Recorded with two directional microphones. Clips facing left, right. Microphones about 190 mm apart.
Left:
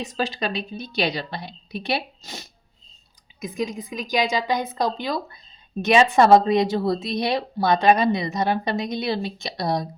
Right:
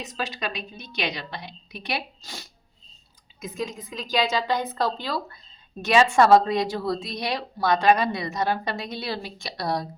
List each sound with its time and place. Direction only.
0.0 s a woman's voice: 30° left (ahead or behind)